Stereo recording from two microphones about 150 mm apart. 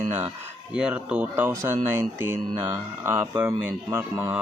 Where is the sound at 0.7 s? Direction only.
5° right (ahead or behind).